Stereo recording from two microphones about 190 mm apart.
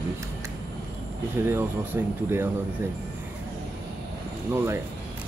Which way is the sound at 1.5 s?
10° right (ahead or behind).